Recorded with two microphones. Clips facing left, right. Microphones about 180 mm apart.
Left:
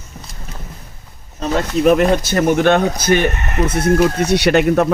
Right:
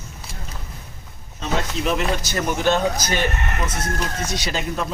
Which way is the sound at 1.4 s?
55° left (ahead or behind).